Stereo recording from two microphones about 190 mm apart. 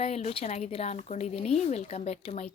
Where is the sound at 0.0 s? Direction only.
35° left (ahead or behind).